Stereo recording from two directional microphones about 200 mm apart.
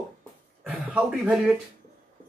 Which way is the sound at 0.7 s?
5° right (ahead or behind).